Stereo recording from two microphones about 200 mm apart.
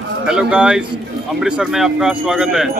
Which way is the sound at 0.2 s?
5° right (ahead or behind).